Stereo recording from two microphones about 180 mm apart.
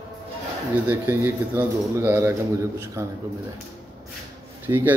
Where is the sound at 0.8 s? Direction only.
10° right (ahead or behind).